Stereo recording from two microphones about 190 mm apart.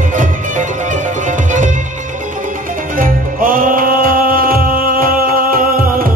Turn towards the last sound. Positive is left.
turn(degrees=-50)  # may be behind; listen again after turning